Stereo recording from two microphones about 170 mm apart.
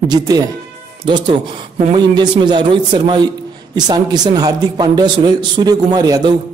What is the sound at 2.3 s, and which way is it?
A man's voice, 30° right (ahead or behind).